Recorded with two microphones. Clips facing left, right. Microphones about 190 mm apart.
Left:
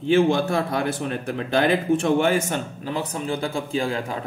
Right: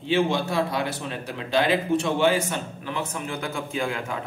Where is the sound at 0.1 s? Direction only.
50° left (ahead or behind).